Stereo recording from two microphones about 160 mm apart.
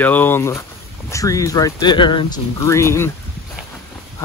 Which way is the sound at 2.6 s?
20° left (ahead or behind).